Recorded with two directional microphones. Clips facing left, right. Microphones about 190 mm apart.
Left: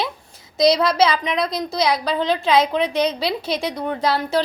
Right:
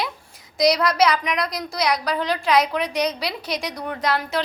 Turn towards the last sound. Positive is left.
turn(degrees=30)  # may be behind; listen again after turning